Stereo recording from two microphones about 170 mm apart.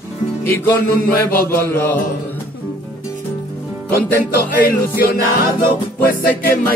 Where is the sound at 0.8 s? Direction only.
60° left (ahead or behind).